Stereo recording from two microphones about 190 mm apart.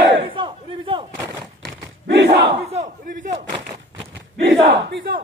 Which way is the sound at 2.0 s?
70° right (ahead or behind).